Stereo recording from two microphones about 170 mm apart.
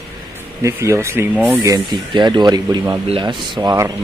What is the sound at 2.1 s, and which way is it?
Speech, 25° right (ahead or behind).